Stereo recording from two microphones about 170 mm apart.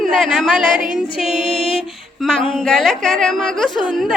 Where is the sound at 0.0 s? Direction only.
Centre (ahead or behind).